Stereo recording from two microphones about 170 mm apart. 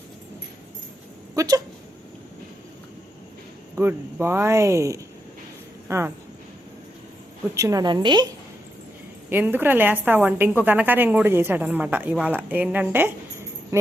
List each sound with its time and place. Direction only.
1.4 s a woman's voice: 20° right (ahead or behind)
3.8 s a woman's voice: 15° right (ahead or behind)
7.5 s a woman's voice: 20° right (ahead or behind)
9.3 s a woman's voice: 10° right (ahead or behind)